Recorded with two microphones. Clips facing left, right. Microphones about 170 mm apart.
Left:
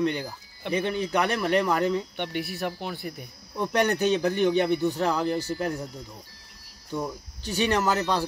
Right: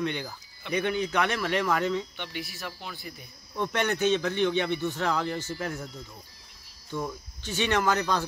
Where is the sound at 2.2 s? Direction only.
60° left (ahead or behind).